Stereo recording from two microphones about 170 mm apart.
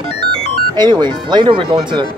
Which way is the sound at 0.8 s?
25° right (ahead or behind).